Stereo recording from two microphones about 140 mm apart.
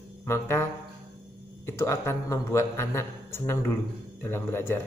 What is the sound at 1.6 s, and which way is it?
A man's voice, 20° left (ahead or behind).